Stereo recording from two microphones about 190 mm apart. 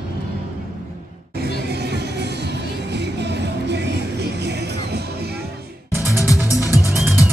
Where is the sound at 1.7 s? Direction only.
60° right (ahead or behind).